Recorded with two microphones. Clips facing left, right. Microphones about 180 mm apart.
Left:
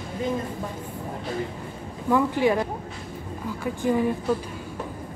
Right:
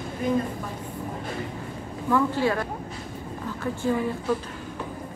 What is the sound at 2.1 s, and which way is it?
Speech, 15° left (ahead or behind).